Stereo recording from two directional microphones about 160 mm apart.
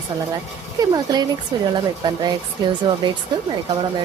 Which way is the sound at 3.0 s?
30° right (ahead or behind).